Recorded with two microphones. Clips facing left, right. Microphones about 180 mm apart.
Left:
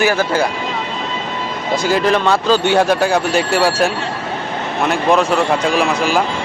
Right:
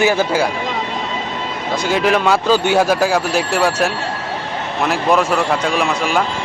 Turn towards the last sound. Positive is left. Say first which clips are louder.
# left 2 dB
turn(degrees=0)  # may be behind; listen again after turning